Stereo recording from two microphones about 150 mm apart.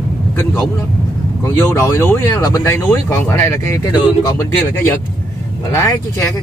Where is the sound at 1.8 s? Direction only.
15° left (ahead or behind).